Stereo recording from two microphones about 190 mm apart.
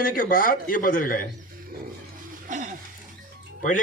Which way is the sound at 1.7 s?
50° right (ahead or behind).